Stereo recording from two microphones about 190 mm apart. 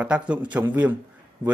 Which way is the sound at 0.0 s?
5° right (ahead or behind).